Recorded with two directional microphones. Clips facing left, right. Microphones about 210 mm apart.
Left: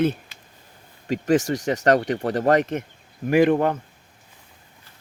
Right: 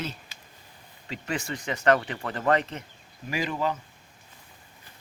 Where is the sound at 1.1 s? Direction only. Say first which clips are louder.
Left 12 dB; 45° left (ahead or behind).